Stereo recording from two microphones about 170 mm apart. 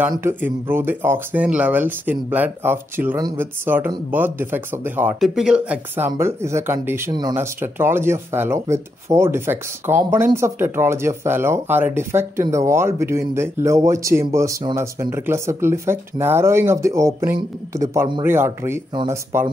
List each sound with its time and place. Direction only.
0.1 s speech: 15° right (ahead or behind)
7.1 s speech: 25° right (ahead or behind)
7.3 s speech: 15° right (ahead or behind)